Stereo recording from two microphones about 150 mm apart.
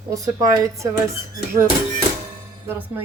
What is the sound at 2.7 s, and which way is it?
Speech, 15° right (ahead or behind).